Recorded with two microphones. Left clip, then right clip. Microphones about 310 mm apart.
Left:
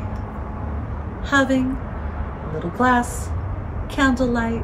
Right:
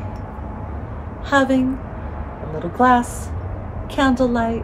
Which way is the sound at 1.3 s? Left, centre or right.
Centre.